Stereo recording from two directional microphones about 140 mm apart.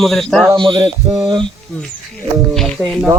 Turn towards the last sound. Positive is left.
turn(degrees=5)  # may be behind; listen again after turning